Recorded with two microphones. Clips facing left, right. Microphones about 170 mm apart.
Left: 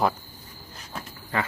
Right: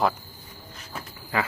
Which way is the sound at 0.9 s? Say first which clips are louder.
Right 1 dB; 5° right (ahead or behind).